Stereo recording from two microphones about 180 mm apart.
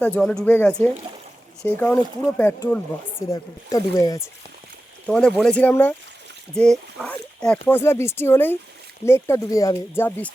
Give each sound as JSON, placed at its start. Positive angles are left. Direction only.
{"t": 0.0, "sound": "speech", "side_deg": 5}
{"t": 5.0, "sound": "speech", "side_deg": 5}